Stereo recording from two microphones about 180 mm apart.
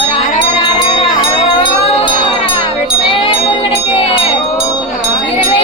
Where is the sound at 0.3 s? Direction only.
30° left (ahead or behind).